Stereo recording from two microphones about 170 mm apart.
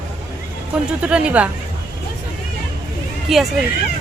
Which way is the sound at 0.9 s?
5° right (ahead or behind).